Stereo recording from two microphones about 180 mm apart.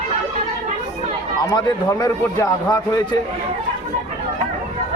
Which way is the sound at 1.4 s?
20° left (ahead or behind).